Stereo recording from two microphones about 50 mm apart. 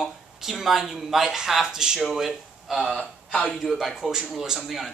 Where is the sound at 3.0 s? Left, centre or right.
Left.